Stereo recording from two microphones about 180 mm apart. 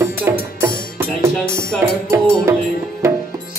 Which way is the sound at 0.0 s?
15° right (ahead or behind).